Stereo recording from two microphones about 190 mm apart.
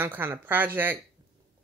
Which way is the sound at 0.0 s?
10° right (ahead or behind).